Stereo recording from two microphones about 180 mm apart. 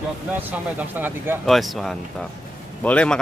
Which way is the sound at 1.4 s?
Centre (ahead or behind).